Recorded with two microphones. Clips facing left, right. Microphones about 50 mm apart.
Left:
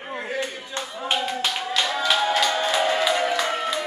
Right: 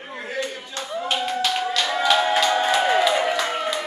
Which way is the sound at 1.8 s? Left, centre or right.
Centre.